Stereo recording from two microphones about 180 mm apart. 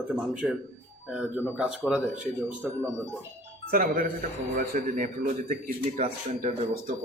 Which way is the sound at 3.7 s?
50° right (ahead or behind).